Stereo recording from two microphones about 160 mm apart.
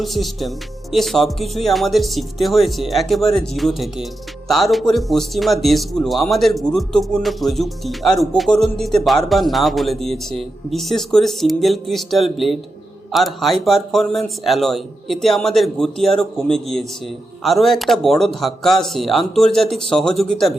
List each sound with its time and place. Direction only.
0.0 s speech: centre (ahead or behind)